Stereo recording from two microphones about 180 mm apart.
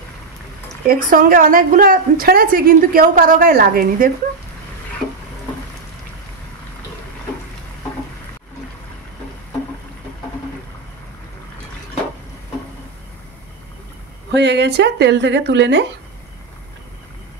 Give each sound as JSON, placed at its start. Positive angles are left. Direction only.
{"t": 0.8, "sound": "a woman's voice", "side_deg": -50}
{"t": 14.3, "sound": "a woman's voice", "side_deg": -70}